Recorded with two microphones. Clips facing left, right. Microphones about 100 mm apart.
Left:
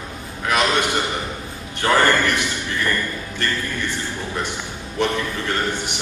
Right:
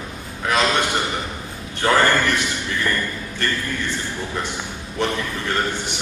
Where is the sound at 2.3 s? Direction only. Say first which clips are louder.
Even; 15° left (ahead or behind).